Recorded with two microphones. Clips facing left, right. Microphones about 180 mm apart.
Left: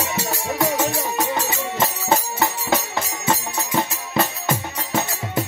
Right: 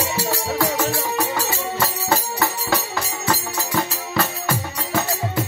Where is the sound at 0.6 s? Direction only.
20° left (ahead or behind).